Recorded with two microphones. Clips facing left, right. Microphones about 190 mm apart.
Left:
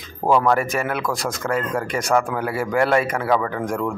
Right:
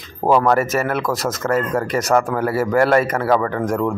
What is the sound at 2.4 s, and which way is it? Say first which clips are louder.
Speech: right 5 dB; 45° right (ahead or behind).